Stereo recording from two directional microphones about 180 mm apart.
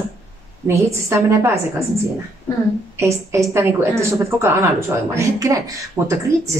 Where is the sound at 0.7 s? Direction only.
15° right (ahead or behind).